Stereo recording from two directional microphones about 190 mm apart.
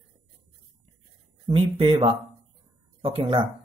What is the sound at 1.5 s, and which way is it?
Speech, 30° right (ahead or behind).